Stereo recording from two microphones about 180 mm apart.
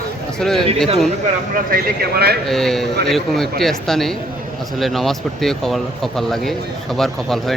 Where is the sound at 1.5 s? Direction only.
55° right (ahead or behind).